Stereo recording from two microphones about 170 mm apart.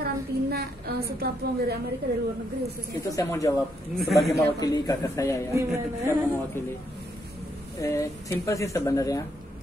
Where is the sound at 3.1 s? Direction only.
20° left (ahead or behind).